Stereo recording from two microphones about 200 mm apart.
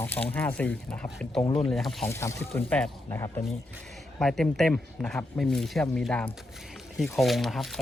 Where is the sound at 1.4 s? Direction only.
25° left (ahead or behind).